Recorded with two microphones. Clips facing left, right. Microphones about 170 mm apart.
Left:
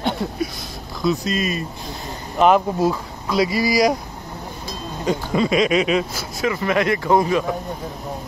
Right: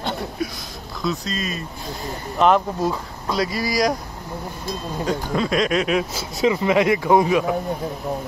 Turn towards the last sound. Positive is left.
turn(degrees=-10)  # may be behind; listen again after turning